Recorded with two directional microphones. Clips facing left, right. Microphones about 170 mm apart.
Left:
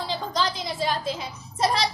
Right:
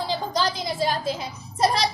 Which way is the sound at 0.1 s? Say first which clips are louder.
Right 1 dB; 5° right (ahead or behind).